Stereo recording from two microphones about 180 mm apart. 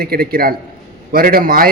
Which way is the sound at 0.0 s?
55° right (ahead or behind).